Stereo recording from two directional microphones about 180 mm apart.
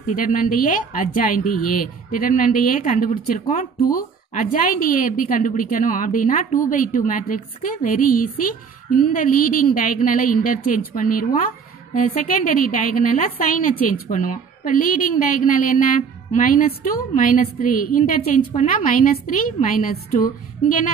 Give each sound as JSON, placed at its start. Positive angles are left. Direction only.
{"t": 0.0, "sound": "a woman's voice", "side_deg": 45}